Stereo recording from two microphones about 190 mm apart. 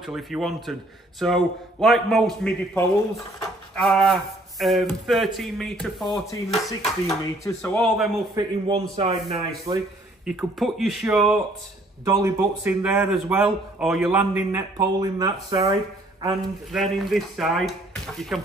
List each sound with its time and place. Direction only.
0.0 s speech: centre (ahead or behind)
3.7 s a sound: centre (ahead or behind)
5.0 s speech: centre (ahead or behind)
8.4 s speech: 25° right (ahead or behind)
10.2 s speech: centre (ahead or behind)
12.0 s a man's voice: 15° right (ahead or behind)
14.5 s speech: 20° right (ahead or behind)
16.7 s speech: centre (ahead or behind)